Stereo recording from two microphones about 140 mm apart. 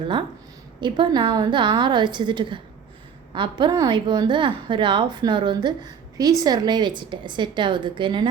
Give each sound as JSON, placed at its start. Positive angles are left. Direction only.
{"t": 0.8, "sound": "a woman's voice", "side_deg": -35}